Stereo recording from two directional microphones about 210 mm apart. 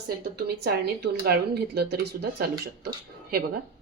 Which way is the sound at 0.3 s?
50° right (ahead or behind).